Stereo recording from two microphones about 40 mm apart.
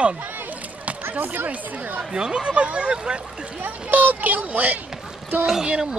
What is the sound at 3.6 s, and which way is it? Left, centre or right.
Speech, right.